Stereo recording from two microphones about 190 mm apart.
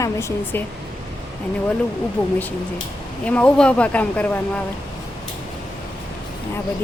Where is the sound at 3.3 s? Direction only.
5° left (ahead or behind).